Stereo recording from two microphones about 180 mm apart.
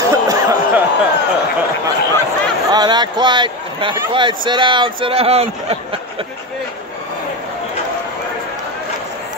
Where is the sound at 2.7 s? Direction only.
25° right (ahead or behind).